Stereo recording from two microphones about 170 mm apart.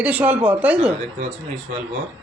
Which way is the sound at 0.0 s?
10° right (ahead or behind).